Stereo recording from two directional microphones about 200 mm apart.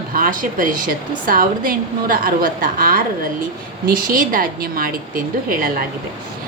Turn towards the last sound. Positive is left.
turn(degrees=-45)  # may be behind; listen again after turning